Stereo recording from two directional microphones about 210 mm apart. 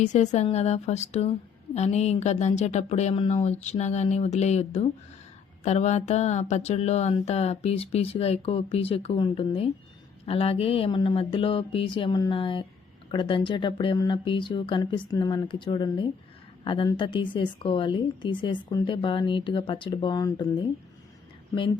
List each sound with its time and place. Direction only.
0.0 s a woman's voice: 35° left (ahead or behind)